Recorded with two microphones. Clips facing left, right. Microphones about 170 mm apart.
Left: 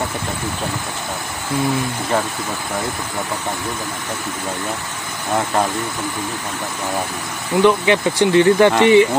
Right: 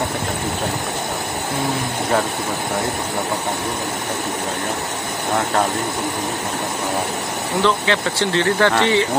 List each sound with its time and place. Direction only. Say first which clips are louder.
7.6 s speech: left 5 dB; 15° left (ahead or behind)